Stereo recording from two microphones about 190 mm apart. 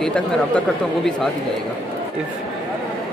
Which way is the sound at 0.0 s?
5° left (ahead or behind).